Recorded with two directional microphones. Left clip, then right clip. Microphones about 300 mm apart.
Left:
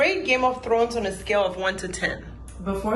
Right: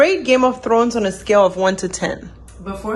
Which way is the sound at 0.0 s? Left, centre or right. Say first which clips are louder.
Right 7 dB; right.